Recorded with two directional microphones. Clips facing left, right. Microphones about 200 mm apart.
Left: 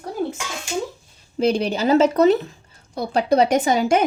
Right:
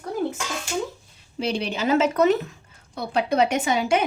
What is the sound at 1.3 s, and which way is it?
A woman's voice, 45° left (ahead or behind).